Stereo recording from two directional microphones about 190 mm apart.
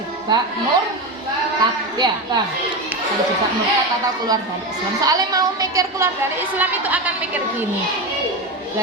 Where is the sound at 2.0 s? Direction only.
20° right (ahead or behind).